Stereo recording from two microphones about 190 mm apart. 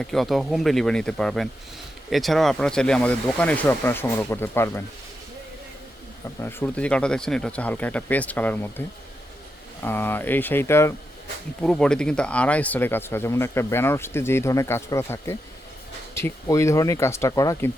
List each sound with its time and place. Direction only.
0.0 s speech: centre (ahead or behind)
6.4 s speech: 10° left (ahead or behind)
9.8 s speech: 10° left (ahead or behind)